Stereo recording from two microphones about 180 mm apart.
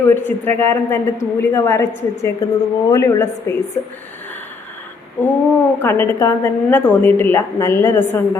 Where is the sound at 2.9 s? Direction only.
15° left (ahead or behind).